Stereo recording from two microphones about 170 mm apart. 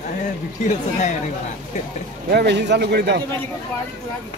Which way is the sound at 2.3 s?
80° right.